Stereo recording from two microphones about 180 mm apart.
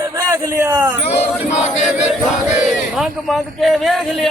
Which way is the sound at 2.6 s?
5° right (ahead or behind).